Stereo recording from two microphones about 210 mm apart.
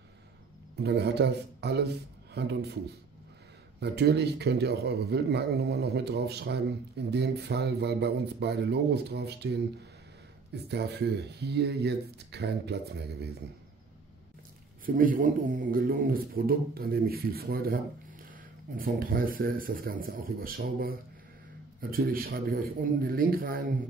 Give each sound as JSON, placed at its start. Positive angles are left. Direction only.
{"t": 0.8, "sound": "a man's voice", "side_deg": -55}
{"t": 3.8, "sound": "a man's voice", "side_deg": -50}
{"t": 15.0, "sound": "a man's voice", "side_deg": -40}
{"t": 18.8, "sound": "a man's voice", "side_deg": -45}